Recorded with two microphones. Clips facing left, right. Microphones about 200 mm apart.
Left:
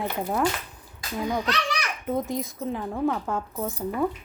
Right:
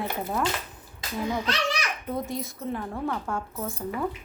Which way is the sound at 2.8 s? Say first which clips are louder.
Left 7 dB; 5° left (ahead or behind).